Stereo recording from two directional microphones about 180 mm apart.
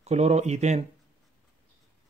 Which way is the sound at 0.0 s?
40° right (ahead or behind).